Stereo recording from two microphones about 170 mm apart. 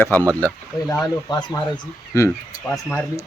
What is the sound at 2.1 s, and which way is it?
A man's voice, 15° left (ahead or behind).